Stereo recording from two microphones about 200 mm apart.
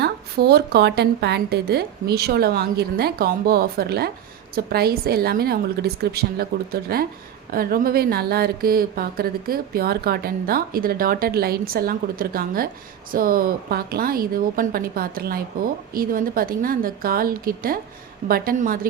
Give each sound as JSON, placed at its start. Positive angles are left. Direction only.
{"t": 0.0, "sound": "a woman's voice", "side_deg": -55}